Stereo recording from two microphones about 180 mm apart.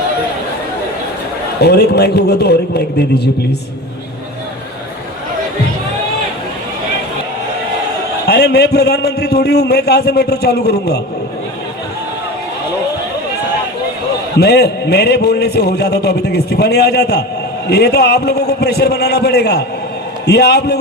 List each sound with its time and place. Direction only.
1.5 s a man's voice: 65° left (ahead or behind)
8.3 s a man's voice: 65° left (ahead or behind)
14.3 s a man's voice: 60° left (ahead or behind)